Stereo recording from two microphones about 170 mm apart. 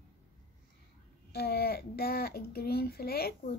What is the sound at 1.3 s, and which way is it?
A child's voice, 65° left (ahead or behind).